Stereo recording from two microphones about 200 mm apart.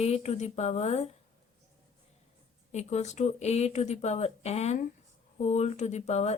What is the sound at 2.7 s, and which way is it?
A woman's voice, 35° left (ahead or behind).